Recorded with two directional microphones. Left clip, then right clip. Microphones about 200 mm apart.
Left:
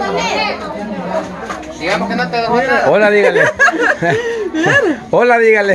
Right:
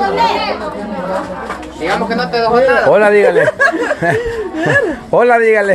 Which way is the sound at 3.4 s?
50° left (ahead or behind).